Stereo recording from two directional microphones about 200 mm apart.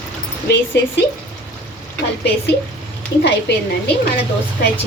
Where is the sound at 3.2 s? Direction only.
55° left (ahead or behind).